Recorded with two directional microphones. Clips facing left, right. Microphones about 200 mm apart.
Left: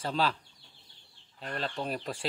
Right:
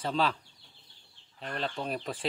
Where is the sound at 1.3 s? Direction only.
Centre (ahead or behind).